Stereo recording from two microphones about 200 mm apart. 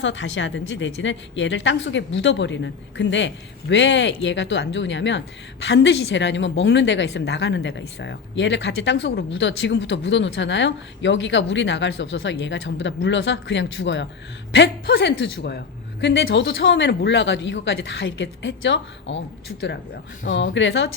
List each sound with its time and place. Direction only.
0.0 s a woman's voice: 65° left (ahead or behind)
20.2 s a woman's voice: 65° left (ahead or behind)